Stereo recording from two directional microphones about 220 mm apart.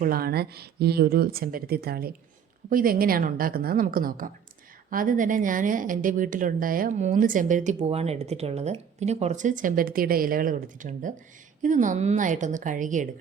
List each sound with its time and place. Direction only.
0.0 s speech: 40° right (ahead or behind)